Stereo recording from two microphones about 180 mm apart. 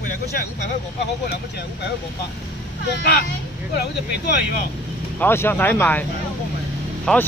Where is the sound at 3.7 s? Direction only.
65° left (ahead or behind).